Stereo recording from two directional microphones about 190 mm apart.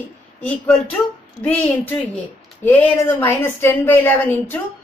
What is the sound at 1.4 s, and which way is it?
A woman's voice, 10° left (ahead or behind).